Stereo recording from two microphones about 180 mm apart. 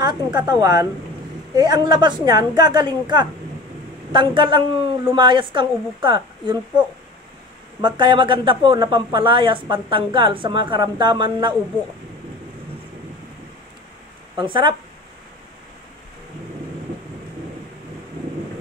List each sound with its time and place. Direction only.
0.0 s speech: 25° right (ahead or behind)
7.8 s speech: 25° right (ahead or behind)
14.4 s speech: 25° right (ahead or behind)